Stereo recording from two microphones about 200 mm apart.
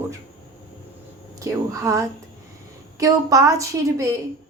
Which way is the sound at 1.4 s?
15° right (ahead or behind).